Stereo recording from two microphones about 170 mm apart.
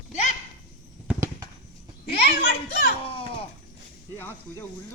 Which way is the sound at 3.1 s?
35° left (ahead or behind).